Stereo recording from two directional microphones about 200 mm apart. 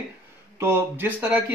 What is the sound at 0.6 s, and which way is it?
Speech, 10° right (ahead or behind).